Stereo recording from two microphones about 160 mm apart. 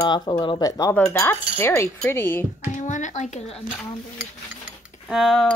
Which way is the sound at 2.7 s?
50° left (ahead or behind).